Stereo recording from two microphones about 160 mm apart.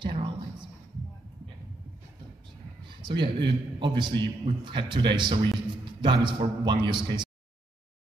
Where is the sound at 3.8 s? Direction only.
30° right (ahead or behind).